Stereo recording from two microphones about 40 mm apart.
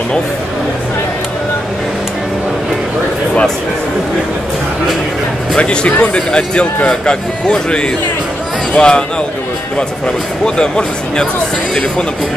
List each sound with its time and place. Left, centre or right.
5.6 s speech: left